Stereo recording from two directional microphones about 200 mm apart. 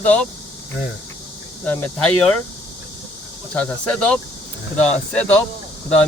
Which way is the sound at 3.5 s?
5° left (ahead or behind).